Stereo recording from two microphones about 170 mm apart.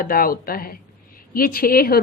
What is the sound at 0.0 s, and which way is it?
A woman's voice, 55° left (ahead or behind).